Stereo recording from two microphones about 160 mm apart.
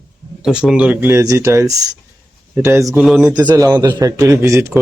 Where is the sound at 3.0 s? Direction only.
Centre (ahead or behind).